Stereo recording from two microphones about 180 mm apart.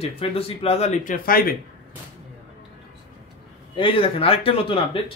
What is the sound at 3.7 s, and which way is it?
Speech, 30° left (ahead or behind).